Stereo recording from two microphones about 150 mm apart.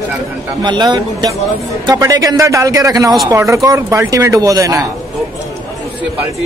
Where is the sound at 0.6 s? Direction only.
30° right (ahead or behind).